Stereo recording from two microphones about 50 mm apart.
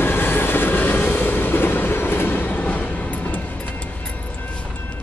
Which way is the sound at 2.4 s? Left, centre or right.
Left.